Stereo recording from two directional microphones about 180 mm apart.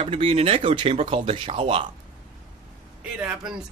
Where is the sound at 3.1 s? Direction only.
5° right (ahead or behind).